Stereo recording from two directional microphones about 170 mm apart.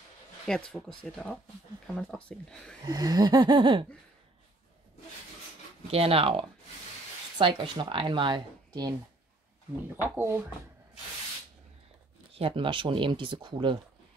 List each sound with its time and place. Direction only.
0.5 s speech: 5° left (ahead or behind)
2.9 s speech: 25° right (ahead or behind)
5.9 s speech: 35° right (ahead or behind)
9.9 s speech: 10° right (ahead or behind)
12.4 s speech: 30° right (ahead or behind)